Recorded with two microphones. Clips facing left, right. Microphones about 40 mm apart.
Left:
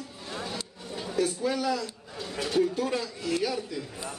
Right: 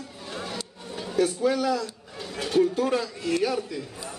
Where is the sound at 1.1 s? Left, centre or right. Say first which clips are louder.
Right 4 dB; right.